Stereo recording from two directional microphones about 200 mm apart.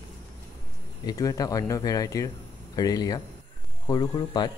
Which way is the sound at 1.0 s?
15° left (ahead or behind).